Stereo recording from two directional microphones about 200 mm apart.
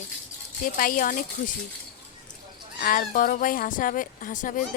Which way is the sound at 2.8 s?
45° left (ahead or behind).